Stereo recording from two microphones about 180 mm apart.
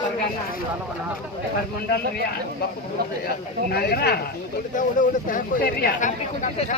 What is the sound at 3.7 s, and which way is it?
Speech, 60° left (ahead or behind).